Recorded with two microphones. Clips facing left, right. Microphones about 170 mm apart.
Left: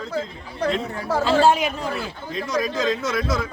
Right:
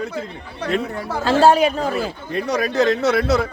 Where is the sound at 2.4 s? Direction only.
70° right (ahead or behind).